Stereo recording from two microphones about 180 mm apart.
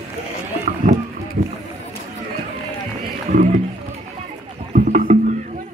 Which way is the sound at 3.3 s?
45° right (ahead or behind).